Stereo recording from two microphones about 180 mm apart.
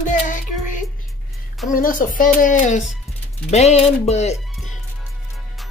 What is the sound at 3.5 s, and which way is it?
Speech, 35° left (ahead or behind).